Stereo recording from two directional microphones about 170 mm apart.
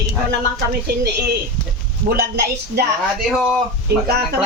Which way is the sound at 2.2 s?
70° right (ahead or behind).